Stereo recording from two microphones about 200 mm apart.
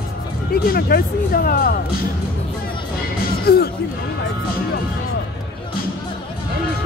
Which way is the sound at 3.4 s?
50° left (ahead or behind).